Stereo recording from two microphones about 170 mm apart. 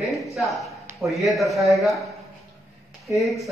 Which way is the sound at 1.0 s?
Centre (ahead or behind).